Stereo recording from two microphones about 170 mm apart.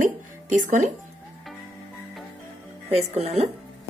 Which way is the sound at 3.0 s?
35° right (ahead or behind).